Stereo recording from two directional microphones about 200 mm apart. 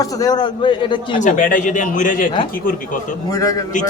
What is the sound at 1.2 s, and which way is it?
A man's voice, 40° left (ahead or behind).